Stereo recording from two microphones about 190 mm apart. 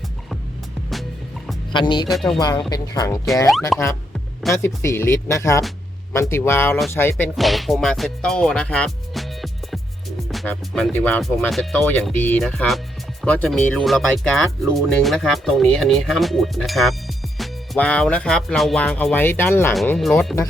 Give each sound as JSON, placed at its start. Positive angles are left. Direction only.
{"t": 1.7, "sound": "speech", "side_deg": 25}
{"t": 2.0, "sound": "music", "side_deg": 0}
{"t": 2.4, "sound": "speech", "side_deg": 20}
{"t": 3.7, "sound": "music", "side_deg": 0}
{"t": 4.5, "sound": "speech", "side_deg": 15}
{"t": 7.3, "sound": "music", "side_deg": 0}
{"t": 19.7, "sound": "music", "side_deg": 0}